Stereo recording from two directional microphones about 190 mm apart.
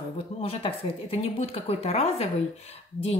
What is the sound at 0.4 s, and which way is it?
Speech, 30° left (ahead or behind).